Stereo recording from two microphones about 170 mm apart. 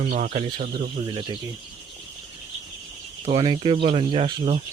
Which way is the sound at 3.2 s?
30° right (ahead or behind).